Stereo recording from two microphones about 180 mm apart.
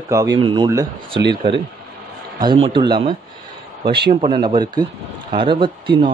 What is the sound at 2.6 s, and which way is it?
Speech, 25° right (ahead or behind).